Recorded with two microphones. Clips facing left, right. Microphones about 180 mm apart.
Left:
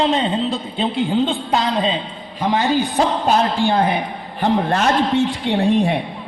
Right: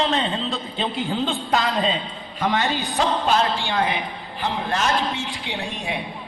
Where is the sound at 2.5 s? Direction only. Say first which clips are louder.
Left 8 dB; 40° left (ahead or behind).